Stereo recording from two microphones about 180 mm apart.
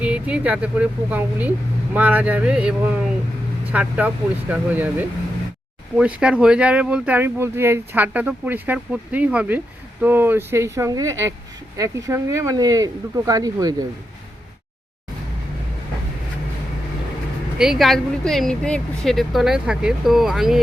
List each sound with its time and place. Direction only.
0.0 s speech: 5° right (ahead or behind)
17.6 s speech: centre (ahead or behind)